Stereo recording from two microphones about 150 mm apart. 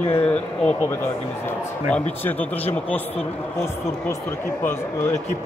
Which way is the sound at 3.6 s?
15° left (ahead or behind).